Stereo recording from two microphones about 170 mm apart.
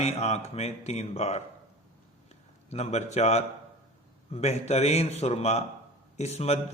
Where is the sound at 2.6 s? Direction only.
40° left (ahead or behind).